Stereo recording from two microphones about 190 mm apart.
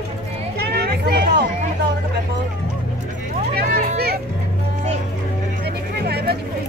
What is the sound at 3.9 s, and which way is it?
Music, 55° right (ahead or behind).